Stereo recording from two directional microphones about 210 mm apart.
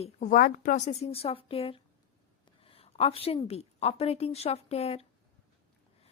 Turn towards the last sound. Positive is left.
turn(degrees=30)  # may be behind; listen again after turning